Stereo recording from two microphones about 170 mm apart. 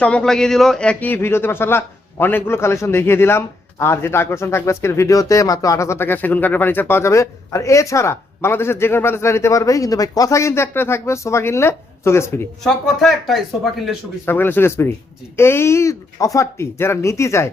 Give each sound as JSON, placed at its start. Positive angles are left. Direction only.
{"t": 0.0, "sound": "a man's voice", "side_deg": 5}
{"t": 12.6, "sound": "speech", "side_deg": 0}
{"t": 14.3, "sound": "a man's voice", "side_deg": 10}